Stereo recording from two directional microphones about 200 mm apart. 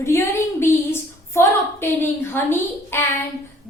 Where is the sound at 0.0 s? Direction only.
15° left (ahead or behind).